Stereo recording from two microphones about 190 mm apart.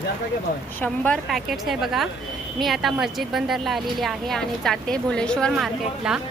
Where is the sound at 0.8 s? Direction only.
10° left (ahead or behind).